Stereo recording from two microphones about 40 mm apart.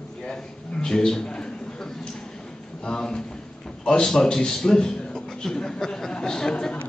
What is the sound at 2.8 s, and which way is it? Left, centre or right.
A man's voice, centre.